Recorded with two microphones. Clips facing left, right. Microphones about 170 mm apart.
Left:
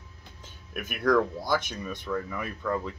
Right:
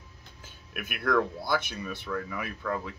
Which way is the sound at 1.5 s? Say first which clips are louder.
Left 1 dB; 5° right (ahead or behind).